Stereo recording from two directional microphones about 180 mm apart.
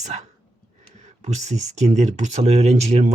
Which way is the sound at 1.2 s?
40° right (ahead or behind).